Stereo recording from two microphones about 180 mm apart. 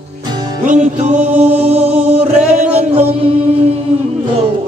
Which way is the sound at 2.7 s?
35° right (ahead or behind).